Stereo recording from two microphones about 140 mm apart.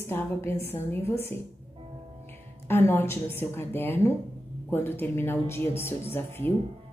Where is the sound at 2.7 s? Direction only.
15° left (ahead or behind).